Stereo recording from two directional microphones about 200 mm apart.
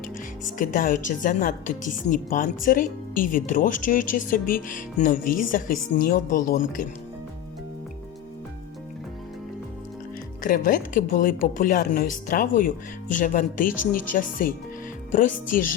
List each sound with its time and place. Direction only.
0.6 s a woman's voice: 40° left (ahead or behind)
10.4 s speech: 40° left (ahead or behind)